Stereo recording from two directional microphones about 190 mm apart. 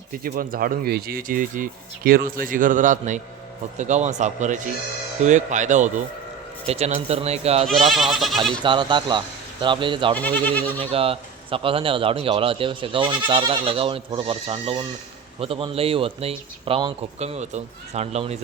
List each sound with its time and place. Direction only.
0.1 s speech: 50° right (ahead or behind); by 7.7 s 35° right (ahead or behind)
7.8 s speech: centre (ahead or behind)
8.6 s speech: 25° right (ahead or behind)
10.2 s speech: 10° left (ahead or behind)
10.8 s speech: 30° right (ahead or behind)